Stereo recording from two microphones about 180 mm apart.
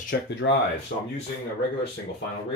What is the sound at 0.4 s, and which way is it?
Speech, 90° left.